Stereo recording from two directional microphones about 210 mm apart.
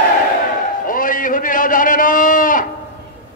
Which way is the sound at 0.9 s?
40° left (ahead or behind).